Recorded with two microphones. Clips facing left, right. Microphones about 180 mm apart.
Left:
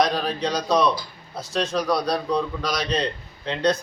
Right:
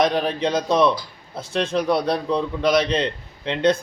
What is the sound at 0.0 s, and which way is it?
A man's voice, 20° right (ahead or behind).